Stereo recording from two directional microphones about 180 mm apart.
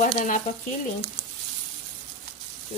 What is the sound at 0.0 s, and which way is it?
Speech, 45° left (ahead or behind).